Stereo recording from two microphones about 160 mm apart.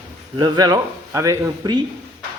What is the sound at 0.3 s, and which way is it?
Speech, 25° right (ahead or behind).